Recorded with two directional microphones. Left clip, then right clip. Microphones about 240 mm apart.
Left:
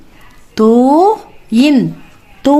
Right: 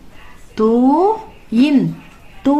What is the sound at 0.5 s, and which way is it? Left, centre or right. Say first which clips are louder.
Speech: left 5 dB; left.